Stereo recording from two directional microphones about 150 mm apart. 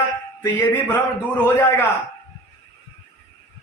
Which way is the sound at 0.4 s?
15° left (ahead or behind).